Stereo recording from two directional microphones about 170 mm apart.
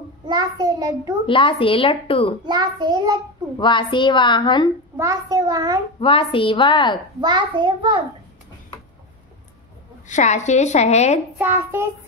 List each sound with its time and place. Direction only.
0.3 s a child's voice: 25° right (ahead or behind)
1.2 s a woman's voice: 30° left (ahead or behind)
2.4 s a child's voice: 25° right (ahead or behind)
3.5 s a woman's voice: 25° left (ahead or behind)
4.9 s a child's voice: 20° right (ahead or behind)
5.9 s a woman's voice: 35° left (ahead or behind)
7.2 s a child's voice: 25° right (ahead or behind)
10.0 s a woman's voice: 45° left (ahead or behind)
11.3 s a child's voice: 15° right (ahead or behind)